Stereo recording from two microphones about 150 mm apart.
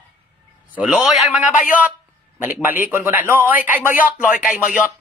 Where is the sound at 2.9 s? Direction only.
15° right (ahead or behind).